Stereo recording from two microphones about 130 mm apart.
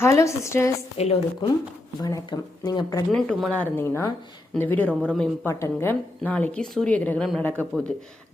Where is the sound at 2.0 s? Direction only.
30° left (ahead or behind).